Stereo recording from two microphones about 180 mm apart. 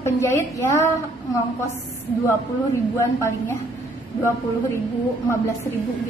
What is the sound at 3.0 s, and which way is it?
Speech, 15° left (ahead or behind).